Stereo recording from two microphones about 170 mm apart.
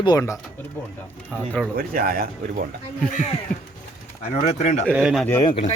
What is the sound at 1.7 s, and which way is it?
Speech, 60° right (ahead or behind).